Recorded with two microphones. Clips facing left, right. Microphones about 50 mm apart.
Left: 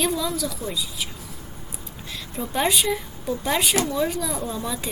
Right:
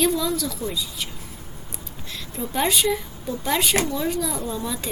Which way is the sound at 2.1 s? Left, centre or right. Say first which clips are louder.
Even; centre.